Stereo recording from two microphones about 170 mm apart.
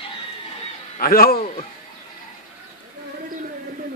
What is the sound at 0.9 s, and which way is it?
Speech, 60° left (ahead or behind).